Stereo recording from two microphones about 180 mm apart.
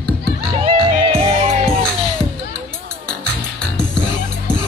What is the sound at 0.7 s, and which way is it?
Music, 30° right (ahead or behind).